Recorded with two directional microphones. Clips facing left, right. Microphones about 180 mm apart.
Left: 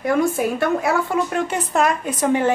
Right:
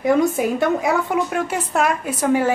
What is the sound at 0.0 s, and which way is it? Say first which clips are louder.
A woman's voice: right 2 dB; 20° right (ahead or behind).